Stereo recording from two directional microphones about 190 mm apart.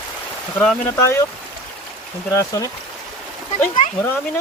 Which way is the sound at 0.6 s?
10° left (ahead or behind).